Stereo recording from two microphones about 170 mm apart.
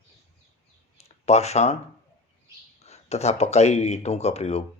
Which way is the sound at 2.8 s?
40° left (ahead or behind).